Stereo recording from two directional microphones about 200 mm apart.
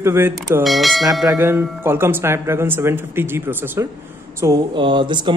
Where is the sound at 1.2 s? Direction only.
15° right (ahead or behind).